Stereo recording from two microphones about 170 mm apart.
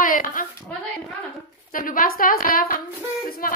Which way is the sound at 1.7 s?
55° left (ahead or behind).